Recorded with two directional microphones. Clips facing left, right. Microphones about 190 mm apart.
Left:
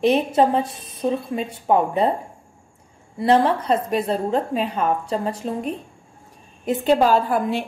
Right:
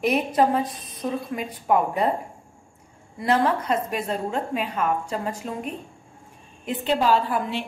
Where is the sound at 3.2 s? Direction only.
30° left (ahead or behind).